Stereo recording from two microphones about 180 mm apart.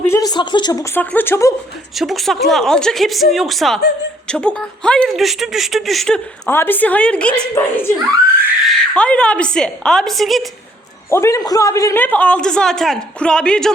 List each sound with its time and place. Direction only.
0.0 s a man's voice: 15° left (ahead or behind)
2.0 s speech: centre (ahead or behind)
11.1 s a man's voice: 15° left (ahead or behind)